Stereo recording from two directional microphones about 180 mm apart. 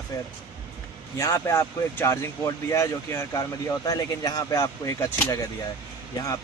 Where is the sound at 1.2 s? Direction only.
15° left (ahead or behind).